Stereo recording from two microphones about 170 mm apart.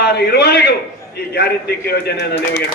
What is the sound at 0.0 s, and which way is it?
A man's voice, 70° left (ahead or behind).